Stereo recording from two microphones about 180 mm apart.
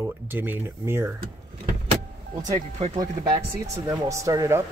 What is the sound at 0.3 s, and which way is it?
Speech, 10° right (ahead or behind).